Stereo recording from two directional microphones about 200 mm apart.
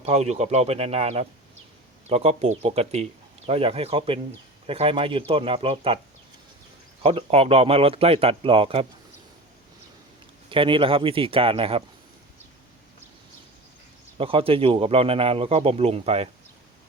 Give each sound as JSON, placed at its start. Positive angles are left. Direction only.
{"t": 0.0, "sound": "speech", "side_deg": -35}
{"t": 7.0, "sound": "speech", "side_deg": -30}
{"t": 10.5, "sound": "speech", "side_deg": -25}
{"t": 14.2, "sound": "speech", "side_deg": -25}